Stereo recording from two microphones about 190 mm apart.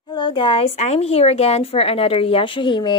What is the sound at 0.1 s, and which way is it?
A woman's voice, 25° left (ahead or behind).